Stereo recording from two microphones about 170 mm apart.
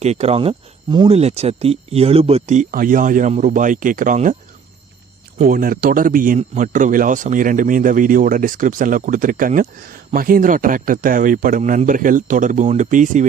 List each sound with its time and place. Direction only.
0.0 s speech: 40° right (ahead or behind)
5.4 s speech: 55° right (ahead or behind)